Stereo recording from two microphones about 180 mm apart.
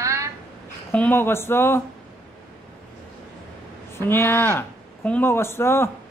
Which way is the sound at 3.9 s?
15° left (ahead or behind).